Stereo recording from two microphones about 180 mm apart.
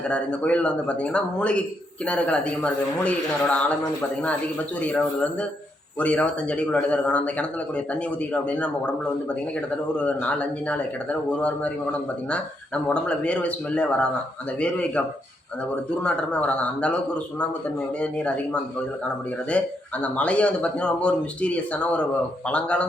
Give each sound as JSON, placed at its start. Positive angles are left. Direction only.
{"t": 0.1, "sound": "speech", "side_deg": 5}
{"t": 4.8, "sound": "speech", "side_deg": 10}
{"t": 10.0, "sound": "speech", "side_deg": 5}
{"t": 16.0, "sound": "speech", "side_deg": 5}
{"t": 19.5, "sound": "speech", "side_deg": 5}